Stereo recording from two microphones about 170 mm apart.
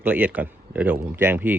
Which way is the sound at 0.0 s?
10° right (ahead or behind).